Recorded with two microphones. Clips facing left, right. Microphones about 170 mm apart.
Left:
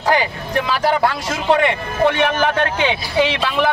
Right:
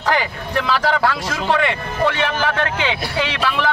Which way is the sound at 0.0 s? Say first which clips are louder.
Left 2 dB; 15° left (ahead or behind).